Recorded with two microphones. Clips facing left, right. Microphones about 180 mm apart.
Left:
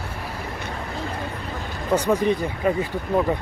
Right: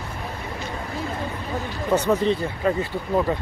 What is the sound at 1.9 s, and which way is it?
Speech, 10° left (ahead or behind).